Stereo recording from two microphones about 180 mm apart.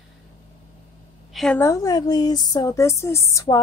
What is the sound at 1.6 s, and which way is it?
Speech, 20° left (ahead or behind).